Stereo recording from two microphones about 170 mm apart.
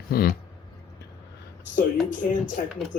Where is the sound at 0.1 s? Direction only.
60° left (ahead or behind).